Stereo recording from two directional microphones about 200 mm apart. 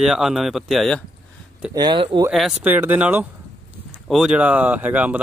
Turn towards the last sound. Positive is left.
turn(degrees=-5)  # may be behind; listen again after turning